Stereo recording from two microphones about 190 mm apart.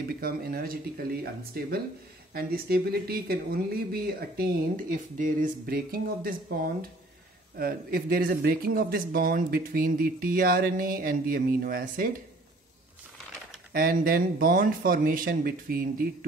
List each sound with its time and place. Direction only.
0.2 s speech: 50° right (ahead or behind)
13.7 s speech: 50° right (ahead or behind)